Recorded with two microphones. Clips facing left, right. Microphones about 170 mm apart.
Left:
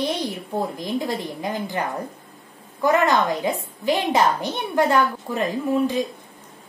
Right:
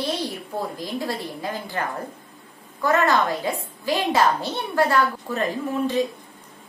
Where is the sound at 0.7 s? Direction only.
20° left (ahead or behind).